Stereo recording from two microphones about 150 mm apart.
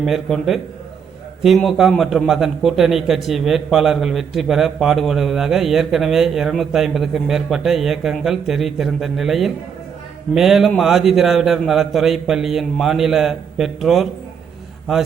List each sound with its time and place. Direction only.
0.0 s a man's voice: centre (ahead or behind)